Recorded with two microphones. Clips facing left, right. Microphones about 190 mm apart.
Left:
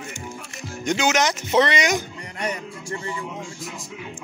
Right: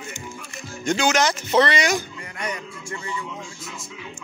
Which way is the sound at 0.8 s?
20° left (ahead or behind).